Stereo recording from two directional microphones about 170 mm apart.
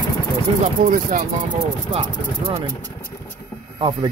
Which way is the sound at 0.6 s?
45° right (ahead or behind).